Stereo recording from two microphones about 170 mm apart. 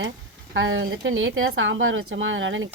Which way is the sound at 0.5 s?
90° right.